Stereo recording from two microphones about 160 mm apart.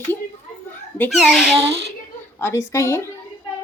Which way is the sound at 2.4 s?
15° left (ahead or behind).